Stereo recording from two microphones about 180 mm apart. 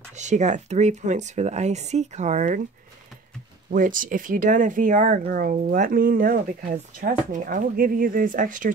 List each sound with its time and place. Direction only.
0.2 s speech: 40° right (ahead or behind)
3.7 s speech: 50° right (ahead or behind)